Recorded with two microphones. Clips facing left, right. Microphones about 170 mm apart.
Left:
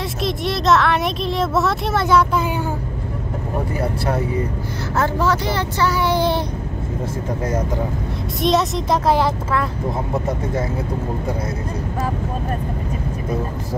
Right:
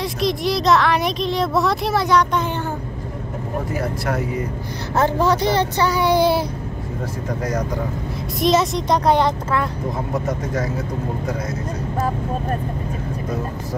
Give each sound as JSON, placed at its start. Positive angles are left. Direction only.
{"t": 0.0, "sound": "a sound", "side_deg": 0}
{"t": 3.8, "sound": "speech", "side_deg": 30}
{"t": 4.9, "sound": "speech", "side_deg": -20}
{"t": 8.4, "sound": "speech", "side_deg": 0}
{"t": 10.2, "sound": "speech", "side_deg": 30}